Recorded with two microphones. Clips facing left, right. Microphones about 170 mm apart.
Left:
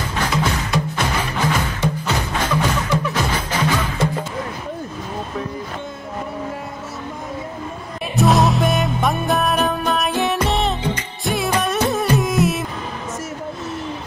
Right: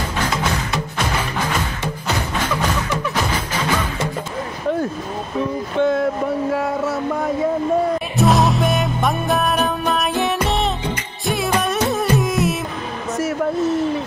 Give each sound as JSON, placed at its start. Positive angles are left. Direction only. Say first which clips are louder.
{"t": 5.8, "sound": "vehicle", "louder": "right 15 dB", "side_deg": -75}
{"t": 6.5, "sound": "a sound", "louder": "right 10 dB", "side_deg": -80}
{"t": 8.2, "sound": "music", "louder": "left 1 dB", "side_deg": 0}